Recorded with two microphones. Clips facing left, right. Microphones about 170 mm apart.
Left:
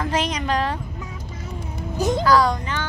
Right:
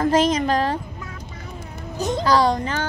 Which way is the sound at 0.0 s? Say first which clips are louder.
Right 6 dB; 45° right (ahead or behind).